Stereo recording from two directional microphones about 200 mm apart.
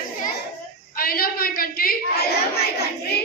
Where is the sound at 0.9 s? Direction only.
45° left (ahead or behind).